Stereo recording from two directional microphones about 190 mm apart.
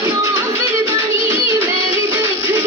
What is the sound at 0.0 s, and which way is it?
Music, 15° right (ahead or behind).